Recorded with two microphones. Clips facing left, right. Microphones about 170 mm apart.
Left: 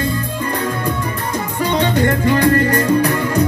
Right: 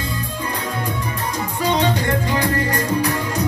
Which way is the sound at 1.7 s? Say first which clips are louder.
Left 6 dB; 55° left (ahead or behind).